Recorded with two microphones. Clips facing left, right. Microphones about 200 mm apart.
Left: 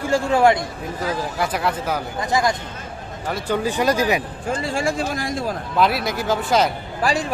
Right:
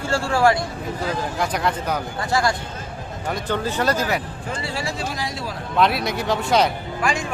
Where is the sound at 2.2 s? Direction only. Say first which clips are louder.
Left 2 dB; 20° left (ahead or behind).